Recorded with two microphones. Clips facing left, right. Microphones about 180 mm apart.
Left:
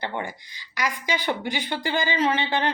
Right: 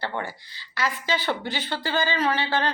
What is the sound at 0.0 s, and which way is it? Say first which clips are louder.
Speech: even; 15° left (ahead or behind).